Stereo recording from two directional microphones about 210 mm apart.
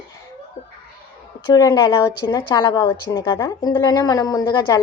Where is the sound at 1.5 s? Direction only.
15° left (ahead or behind).